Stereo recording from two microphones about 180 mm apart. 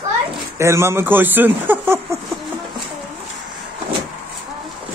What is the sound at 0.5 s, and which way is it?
Speech, 15° right (ahead or behind).